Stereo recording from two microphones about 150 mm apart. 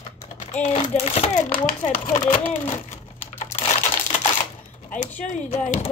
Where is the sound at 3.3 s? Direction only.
50° left (ahead or behind).